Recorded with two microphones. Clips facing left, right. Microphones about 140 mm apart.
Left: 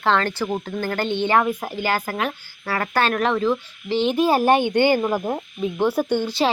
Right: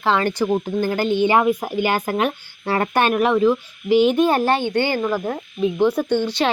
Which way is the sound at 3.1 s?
10° right (ahead or behind).